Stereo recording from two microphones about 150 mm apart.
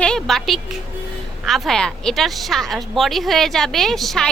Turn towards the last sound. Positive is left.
turn(degrees=0)  # may be behind; listen again after turning